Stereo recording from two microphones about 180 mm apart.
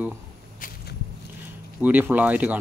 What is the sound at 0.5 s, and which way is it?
Walk, 50° left (ahead or behind).